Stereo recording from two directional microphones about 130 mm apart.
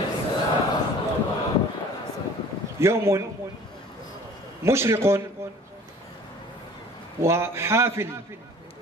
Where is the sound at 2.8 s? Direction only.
20° right (ahead or behind).